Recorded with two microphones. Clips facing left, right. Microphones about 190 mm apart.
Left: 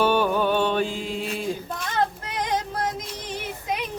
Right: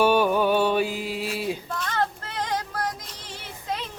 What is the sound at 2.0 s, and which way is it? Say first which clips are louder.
Child singing: left 3 dB; 15° left (ahead or behind).